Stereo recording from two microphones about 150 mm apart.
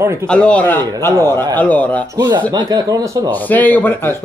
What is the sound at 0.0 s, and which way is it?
Speech, 15° right (ahead or behind).